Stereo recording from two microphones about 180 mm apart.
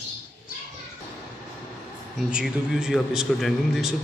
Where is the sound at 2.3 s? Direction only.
5° right (ahead or behind).